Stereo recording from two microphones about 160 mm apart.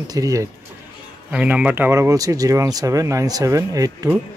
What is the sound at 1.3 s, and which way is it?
Speech, 10° right (ahead or behind).